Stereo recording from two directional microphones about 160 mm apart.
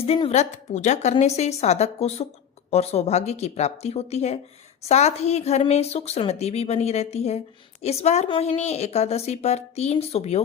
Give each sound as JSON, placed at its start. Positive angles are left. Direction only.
{"t": 0.3, "sound": "a woman's voice", "side_deg": 45}